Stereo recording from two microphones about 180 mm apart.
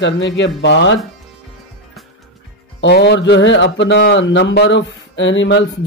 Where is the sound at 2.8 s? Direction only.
75° left (ahead or behind).